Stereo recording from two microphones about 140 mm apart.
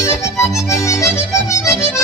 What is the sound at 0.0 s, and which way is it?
Accordion, 20° left (ahead or behind).